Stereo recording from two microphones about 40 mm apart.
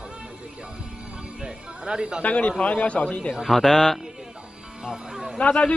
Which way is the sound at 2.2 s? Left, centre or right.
Left.